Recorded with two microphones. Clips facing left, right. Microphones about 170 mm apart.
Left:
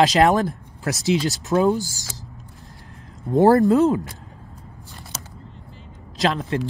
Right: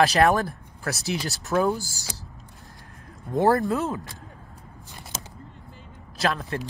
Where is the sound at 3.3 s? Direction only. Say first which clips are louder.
Left 7 dB; 20° left (ahead or behind).